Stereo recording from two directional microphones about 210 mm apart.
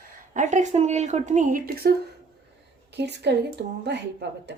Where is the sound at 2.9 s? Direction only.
55° right (ahead or behind).